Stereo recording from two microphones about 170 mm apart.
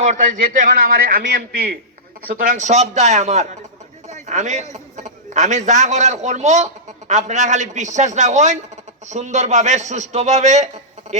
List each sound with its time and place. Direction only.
0.0 s a man's voice: 45° right (ahead or behind)
2.4 s a man's voice: 50° right (ahead or behind)